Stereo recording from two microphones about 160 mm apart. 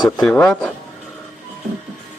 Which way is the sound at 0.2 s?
5° left (ahead or behind).